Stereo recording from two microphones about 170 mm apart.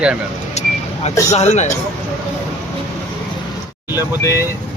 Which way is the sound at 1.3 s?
40° left (ahead or behind).